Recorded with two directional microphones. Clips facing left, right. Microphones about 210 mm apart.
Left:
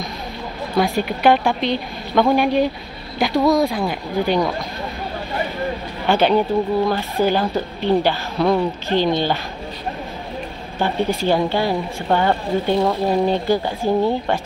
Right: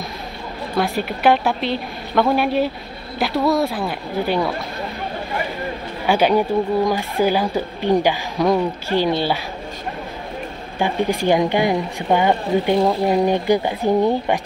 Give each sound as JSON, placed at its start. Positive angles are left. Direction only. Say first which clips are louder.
{"t": 0.7, "sound": "a woman's voice", "louder": "left 2 dB", "side_deg": 0}
{"t": 6.0, "sound": "a woman's voice", "louder": "even", "side_deg": -10}
{"t": 10.8, "sound": "a woman's voice", "louder": "even", "side_deg": -15}